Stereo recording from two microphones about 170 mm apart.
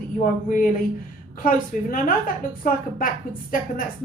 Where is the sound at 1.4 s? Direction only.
55° left (ahead or behind).